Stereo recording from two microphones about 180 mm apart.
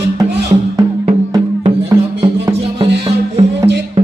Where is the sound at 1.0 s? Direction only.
30° right (ahead or behind).